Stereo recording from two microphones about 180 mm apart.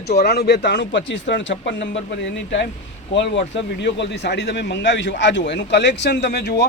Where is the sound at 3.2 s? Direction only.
80° left; by 6.7 s 65° left (ahead or behind).